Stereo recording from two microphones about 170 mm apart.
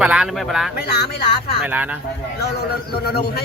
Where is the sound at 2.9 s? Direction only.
65° left (ahead or behind).